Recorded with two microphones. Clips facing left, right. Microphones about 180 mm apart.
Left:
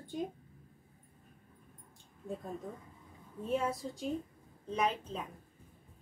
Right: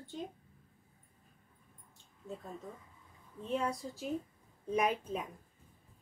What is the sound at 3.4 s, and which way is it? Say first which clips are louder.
Speech: left 2 dB; 5° left (ahead or behind).